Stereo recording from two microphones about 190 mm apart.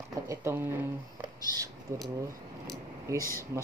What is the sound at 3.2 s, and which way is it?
Speech, 15° left (ahead or behind).